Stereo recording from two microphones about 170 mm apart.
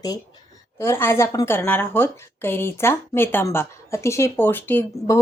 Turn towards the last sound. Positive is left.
turn(degrees=10)  # may be behind; listen again after turning